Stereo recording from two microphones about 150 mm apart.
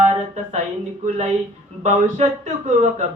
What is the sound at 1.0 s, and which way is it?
Speech, 50° right (ahead or behind).